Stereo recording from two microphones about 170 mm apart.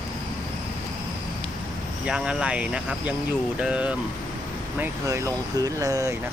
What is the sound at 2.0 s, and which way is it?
Speech, 5° right (ahead or behind).